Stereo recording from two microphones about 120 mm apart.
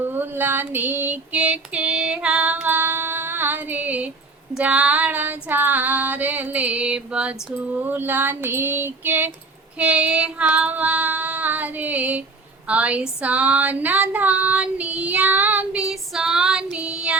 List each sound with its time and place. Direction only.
0.1 s female singing: 15° right (ahead or behind)
16.7 s child singing: 10° right (ahead or behind)